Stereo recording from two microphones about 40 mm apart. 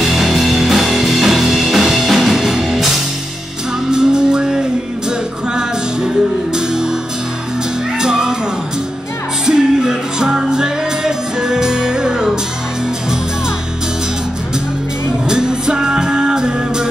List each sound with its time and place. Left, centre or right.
0.0 s music: centre
3.9 s music: centre
8.0 s music: centre
9.5 s music: centre
15.2 s music: centre